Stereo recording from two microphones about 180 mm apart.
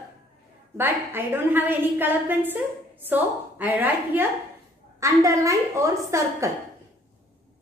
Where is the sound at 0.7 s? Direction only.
10° right (ahead or behind).